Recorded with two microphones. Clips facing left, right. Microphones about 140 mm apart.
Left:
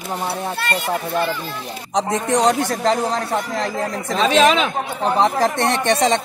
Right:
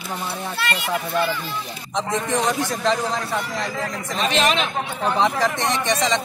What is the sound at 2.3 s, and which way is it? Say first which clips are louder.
Speech: left 7 dB; 80° left.